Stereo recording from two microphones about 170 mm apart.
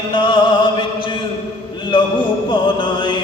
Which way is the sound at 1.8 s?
30° left (ahead or behind).